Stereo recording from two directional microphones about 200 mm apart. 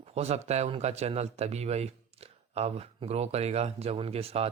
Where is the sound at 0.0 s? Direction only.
30° right (ahead or behind).